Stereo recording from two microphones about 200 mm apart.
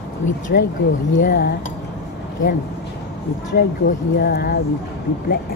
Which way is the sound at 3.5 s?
50° left (ahead or behind).